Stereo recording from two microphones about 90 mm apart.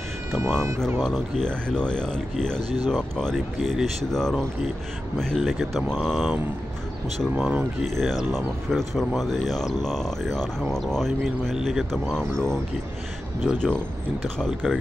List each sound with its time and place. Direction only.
0.6 s speech: 30° right (ahead or behind)
0.9 s speech: 5° left (ahead or behind)
7.3 s speech: 5° right (ahead or behind)
7.8 s speech: 5° left (ahead or behind)